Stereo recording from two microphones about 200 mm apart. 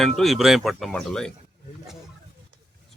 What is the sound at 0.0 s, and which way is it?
Speech, centre (ahead or behind).